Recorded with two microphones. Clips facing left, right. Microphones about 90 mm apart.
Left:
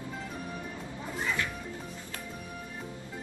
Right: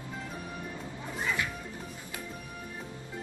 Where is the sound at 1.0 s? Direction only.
Centre (ahead or behind).